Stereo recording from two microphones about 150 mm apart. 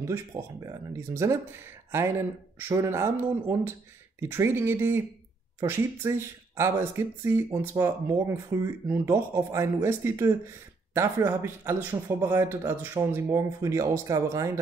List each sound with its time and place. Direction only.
0.0 s speech: 25° right (ahead or behind)